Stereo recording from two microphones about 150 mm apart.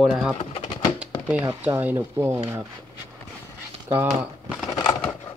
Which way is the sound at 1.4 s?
15° right (ahead or behind).